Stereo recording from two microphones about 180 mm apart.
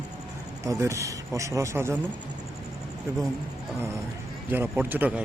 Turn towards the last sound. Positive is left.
turn(degrees=-10)  # may be behind; listen again after turning